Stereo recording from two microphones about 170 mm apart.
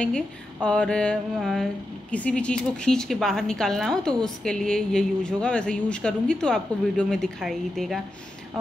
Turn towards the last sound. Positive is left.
turn(degrees=0)  # may be behind; listen again after turning